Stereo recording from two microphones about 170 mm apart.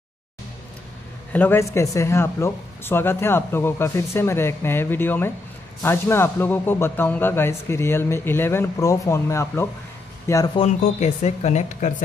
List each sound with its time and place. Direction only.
1.3 s speech: 10° left (ahead or behind)
11.0 s speech: 40° left (ahead or behind)